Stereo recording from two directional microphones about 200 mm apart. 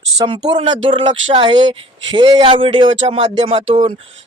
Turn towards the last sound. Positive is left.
turn(degrees=-30)  # may be behind; listen again after turning